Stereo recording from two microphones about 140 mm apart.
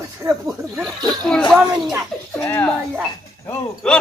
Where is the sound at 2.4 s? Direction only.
15° left (ahead or behind).